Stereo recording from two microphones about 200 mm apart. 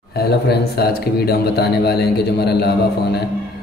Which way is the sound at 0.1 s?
50° left (ahead or behind).